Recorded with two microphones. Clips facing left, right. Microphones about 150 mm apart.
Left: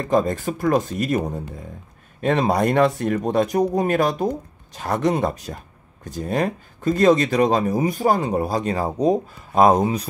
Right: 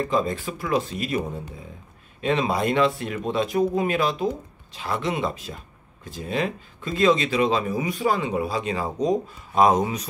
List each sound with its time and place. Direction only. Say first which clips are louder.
0.1 s speech: left 5 dB; 45° left (ahead or behind)